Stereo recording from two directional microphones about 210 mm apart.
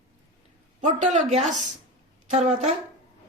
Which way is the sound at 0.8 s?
35° right (ahead or behind).